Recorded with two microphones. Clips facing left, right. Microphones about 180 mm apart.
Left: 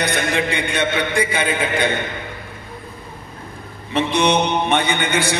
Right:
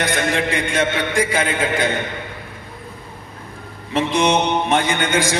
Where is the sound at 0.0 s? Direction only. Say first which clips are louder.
Even; 90° right.